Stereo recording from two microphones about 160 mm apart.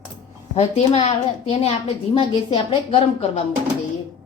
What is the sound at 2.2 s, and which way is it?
Speech, 30° left (ahead or behind).